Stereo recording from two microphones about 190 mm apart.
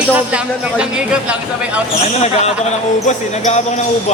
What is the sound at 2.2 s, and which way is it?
Speech, 35° left (ahead or behind).